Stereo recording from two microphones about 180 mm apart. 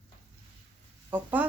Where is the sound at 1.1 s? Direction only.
10° right (ahead or behind).